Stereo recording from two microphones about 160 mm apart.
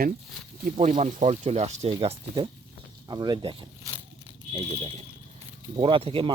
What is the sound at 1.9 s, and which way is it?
Speech, 30° right (ahead or behind).